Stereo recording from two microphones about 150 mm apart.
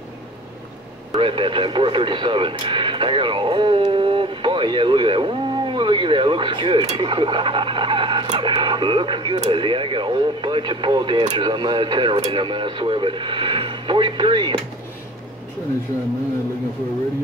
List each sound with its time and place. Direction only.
1.1 s radio: 35° right (ahead or behind)
6.9 s speech: 35° right (ahead or behind)